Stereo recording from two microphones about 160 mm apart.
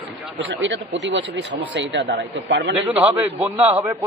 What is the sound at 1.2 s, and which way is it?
A man's voice, 90° right.